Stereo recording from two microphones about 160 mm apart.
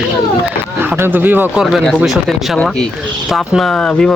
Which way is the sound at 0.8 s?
15° right (ahead or behind).